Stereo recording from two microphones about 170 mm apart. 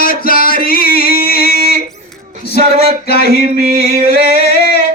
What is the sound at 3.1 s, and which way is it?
Music, 65° left (ahead or behind).